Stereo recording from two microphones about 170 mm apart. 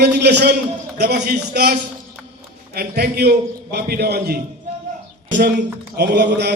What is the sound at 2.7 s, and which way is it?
A man's voice, 65° right (ahead or behind).